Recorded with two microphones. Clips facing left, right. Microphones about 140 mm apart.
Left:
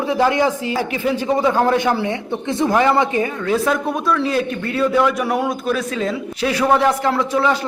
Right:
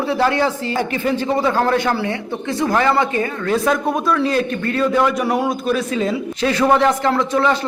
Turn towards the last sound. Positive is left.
turn(degrees=10)  # may be behind; listen again after turning